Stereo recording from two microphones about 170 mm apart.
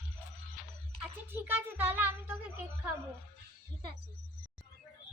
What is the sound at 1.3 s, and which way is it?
Speech, 10° right (ahead or behind).